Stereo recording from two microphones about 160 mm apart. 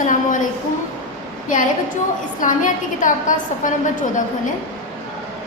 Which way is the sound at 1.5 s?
55° left (ahead or behind).